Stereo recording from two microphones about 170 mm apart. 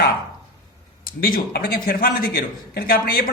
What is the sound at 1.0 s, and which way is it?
A man's voice, 60° left (ahead or behind).